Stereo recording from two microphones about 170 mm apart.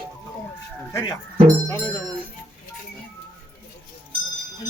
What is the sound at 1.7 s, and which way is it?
Speech, 15° left (ahead or behind).